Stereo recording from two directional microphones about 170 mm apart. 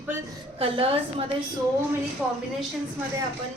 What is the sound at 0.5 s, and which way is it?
Speech, 35° right (ahead or behind).